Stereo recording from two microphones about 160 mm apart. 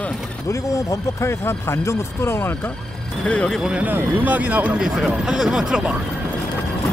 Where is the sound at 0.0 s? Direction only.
20° left (ahead or behind); by 5.9 s 5° right (ahead or behind).